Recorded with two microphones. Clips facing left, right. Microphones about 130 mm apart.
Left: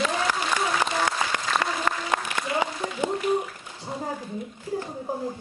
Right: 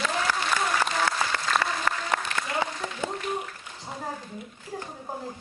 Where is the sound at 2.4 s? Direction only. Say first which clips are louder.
Left 3 dB; 15° left (ahead or behind).